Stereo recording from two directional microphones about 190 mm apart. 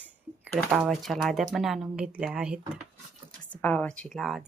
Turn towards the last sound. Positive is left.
turn(degrees=0)  # may be behind; listen again after turning